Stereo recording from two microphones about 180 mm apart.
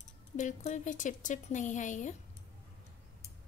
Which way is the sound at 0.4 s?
45° left (ahead or behind).